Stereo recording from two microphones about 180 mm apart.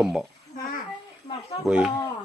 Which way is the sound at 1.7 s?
5° right (ahead or behind).